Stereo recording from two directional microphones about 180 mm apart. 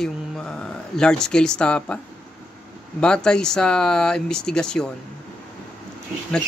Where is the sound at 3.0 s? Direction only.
5° left (ahead or behind).